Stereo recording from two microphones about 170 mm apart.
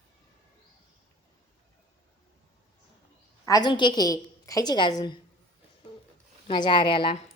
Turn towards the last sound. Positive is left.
turn(degrees=30)  # may be behind; listen again after turning